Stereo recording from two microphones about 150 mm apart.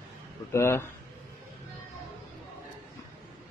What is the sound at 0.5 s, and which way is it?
Speech, 15° left (ahead or behind).